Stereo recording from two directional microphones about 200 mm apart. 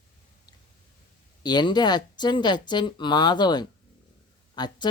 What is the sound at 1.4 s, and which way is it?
Speech, 20° left (ahead or behind).